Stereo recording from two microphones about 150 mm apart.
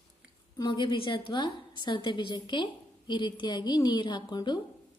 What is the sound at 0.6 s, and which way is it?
A woman's voice, 30° left (ahead or behind).